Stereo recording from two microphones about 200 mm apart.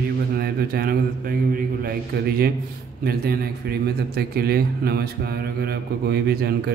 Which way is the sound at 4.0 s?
50° right (ahead or behind).